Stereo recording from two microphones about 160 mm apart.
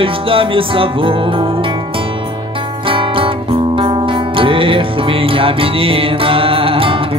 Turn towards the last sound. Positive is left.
turn(degrees=-35)  # may be behind; listen again after turning